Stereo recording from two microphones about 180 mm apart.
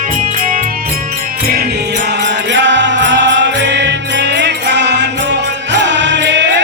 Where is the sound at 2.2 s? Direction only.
80° right.